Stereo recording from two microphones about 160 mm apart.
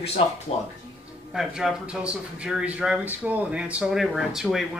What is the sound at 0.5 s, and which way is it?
Speech, 40° left (ahead or behind).